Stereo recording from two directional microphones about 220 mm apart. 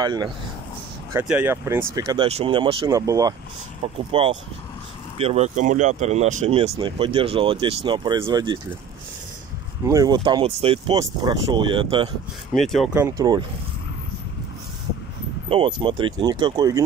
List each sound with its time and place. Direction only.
0.0 s speech: 20° right (ahead or behind)
1.1 s speech: 5° right (ahead or behind)
9.8 s speech: 15° right (ahead or behind)
12.5 s speech: centre (ahead or behind); by 13.5 s 15° right (ahead or behind)
15.5 s speech: 25° right (ahead or behind)